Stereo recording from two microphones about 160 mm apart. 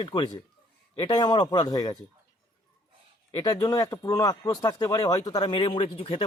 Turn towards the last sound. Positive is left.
turn(degrees=35)  # may be behind; listen again after turning